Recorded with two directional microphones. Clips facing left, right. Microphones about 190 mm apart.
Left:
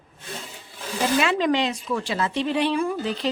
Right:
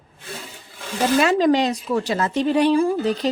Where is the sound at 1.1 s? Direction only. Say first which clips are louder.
Right 5 dB; 40° right (ahead or behind).